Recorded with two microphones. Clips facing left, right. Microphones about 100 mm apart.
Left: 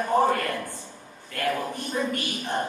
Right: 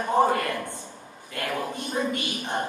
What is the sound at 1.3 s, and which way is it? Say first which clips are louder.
A man's voice: left 2 dB; 20° right (ahead or behind).